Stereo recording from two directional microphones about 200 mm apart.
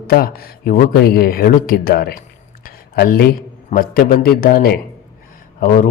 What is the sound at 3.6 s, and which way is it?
A man's voice, 45° left (ahead or behind).